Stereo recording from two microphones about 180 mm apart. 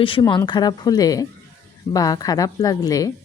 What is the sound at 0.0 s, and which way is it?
A woman's voice, 30° left (ahead or behind).